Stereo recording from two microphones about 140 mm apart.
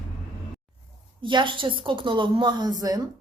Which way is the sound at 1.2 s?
35° right (ahead or behind).